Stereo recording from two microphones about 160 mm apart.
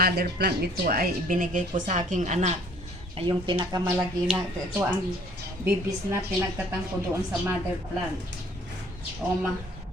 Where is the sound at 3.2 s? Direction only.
30° right (ahead or behind).